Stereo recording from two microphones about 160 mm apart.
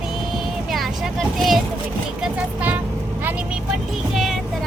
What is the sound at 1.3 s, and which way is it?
Speech, centre (ahead or behind).